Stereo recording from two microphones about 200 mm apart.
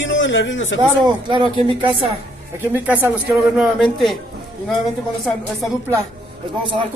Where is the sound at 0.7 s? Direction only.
20° right (ahead or behind).